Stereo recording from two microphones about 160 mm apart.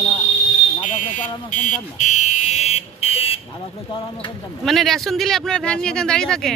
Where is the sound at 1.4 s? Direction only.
50° left (ahead or behind).